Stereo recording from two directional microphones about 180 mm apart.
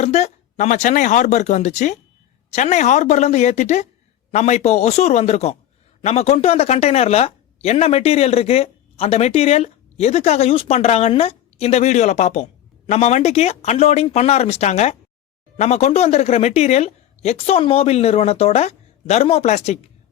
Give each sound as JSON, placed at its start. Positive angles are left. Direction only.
{"t": 0.0, "sound": "speech", "side_deg": 40}